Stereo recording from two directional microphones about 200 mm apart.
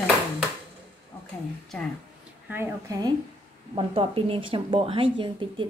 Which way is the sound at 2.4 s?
10° right (ahead or behind).